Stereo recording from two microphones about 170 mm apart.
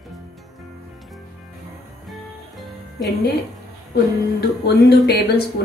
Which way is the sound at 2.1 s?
Centre (ahead or behind).